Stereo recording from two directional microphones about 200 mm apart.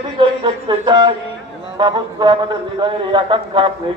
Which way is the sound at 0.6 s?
25° right (ahead or behind).